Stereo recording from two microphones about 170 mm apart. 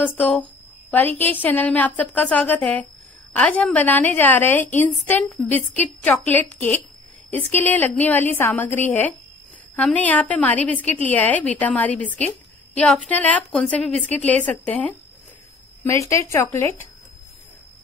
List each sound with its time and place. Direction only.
0.0 s a woman's voice: 10° left (ahead or behind)
15.8 s a woman's voice: 15° left (ahead or behind)